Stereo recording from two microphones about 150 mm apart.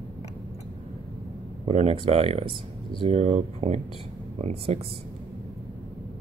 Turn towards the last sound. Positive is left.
turn(degrees=-45)  # may be behind; listen again after turning